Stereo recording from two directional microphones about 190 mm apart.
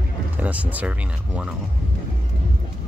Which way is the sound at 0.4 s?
10° right (ahead or behind).